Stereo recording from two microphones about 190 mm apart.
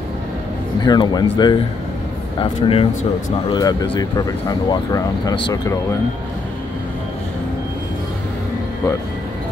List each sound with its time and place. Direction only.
0.8 s speech: 20° left (ahead or behind)